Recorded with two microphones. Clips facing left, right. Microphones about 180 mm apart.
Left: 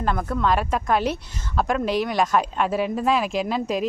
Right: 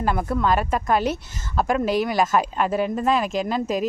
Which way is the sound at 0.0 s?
5° right (ahead or behind).